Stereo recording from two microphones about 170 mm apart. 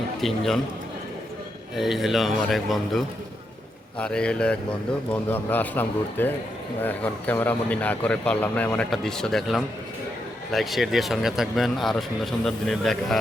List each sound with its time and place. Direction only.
0.2 s speech: centre (ahead or behind)
1.7 s speech: centre (ahead or behind)